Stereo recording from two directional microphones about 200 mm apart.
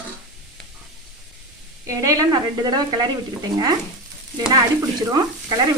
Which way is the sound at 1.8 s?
15° right (ahead or behind).